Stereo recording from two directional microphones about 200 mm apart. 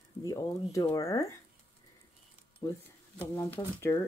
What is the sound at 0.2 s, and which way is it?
Speech, 15° left (ahead or behind).